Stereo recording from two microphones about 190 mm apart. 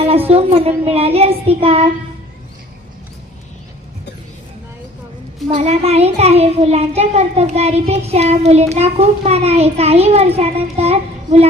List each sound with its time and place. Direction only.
0.3 s a child's voice: 30° right (ahead or behind)
5.5 s a child's voice: 35° right (ahead or behind)